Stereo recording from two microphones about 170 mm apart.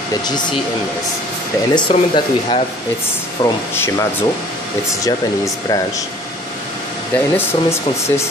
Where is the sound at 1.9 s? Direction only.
35° left (ahead or behind).